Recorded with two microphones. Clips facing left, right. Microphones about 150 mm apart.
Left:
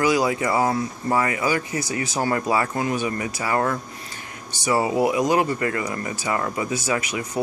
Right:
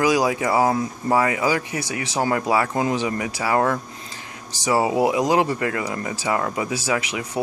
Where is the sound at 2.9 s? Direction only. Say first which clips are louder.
Right 1 dB; 90° right.